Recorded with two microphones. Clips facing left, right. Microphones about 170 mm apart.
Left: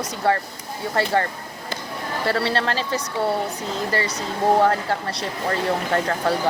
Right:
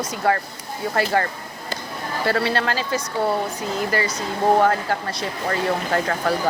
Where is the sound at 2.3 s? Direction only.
30° left (ahead or behind).